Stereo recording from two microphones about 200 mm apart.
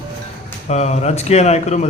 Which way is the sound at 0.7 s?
35° left (ahead or behind).